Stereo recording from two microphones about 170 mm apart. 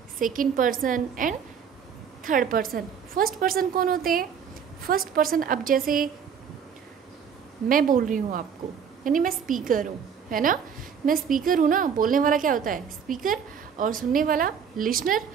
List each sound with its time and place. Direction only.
0.2 s a woman's voice: 55° right (ahead or behind)
7.6 s a woman's voice: 55° right (ahead or behind)